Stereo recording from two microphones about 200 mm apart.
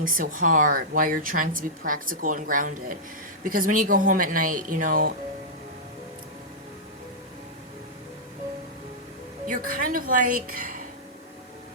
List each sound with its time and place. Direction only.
0.0 s a woman's voice: 45° right (ahead or behind)
9.5 s a woman's voice: 45° right (ahead or behind)